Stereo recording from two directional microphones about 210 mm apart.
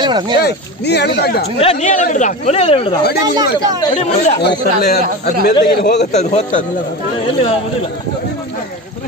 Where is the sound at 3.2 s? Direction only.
15° right (ahead or behind).